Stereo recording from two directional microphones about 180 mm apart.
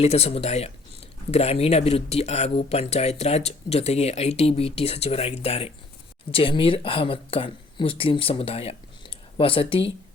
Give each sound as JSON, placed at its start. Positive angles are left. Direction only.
{"t": 0.0, "sound": "speech", "side_deg": 35}